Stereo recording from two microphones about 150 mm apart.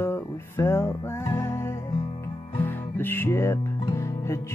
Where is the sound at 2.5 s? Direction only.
15° left (ahead or behind).